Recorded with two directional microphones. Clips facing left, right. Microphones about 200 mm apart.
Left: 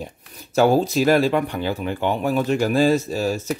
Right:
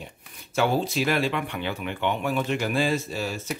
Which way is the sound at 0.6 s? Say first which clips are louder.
Left 7 dB; 40° left (ahead or behind).